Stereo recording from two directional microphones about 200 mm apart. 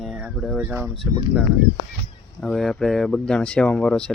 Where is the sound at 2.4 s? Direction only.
Centre (ahead or behind).